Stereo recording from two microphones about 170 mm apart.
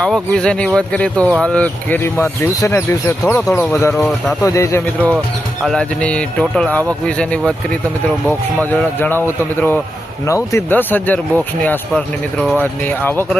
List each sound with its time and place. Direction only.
0.0 s speech: 5° left (ahead or behind)
5.6 s speech: 5° left (ahead or behind)
8.7 s speech: 10° left (ahead or behind)